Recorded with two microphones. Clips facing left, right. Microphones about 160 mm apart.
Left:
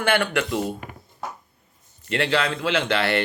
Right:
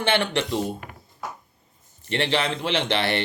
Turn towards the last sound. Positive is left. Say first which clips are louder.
# left 2 dB
turn(degrees=-20)  # may be behind; listen again after turning